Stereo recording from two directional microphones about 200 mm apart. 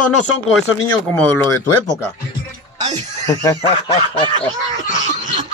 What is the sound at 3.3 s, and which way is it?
Speech, 15° left (ahead or behind).